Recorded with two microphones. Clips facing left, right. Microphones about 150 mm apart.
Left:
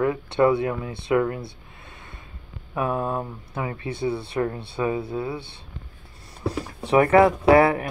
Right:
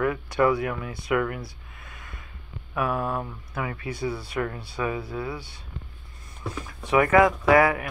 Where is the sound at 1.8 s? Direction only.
25° left (ahead or behind).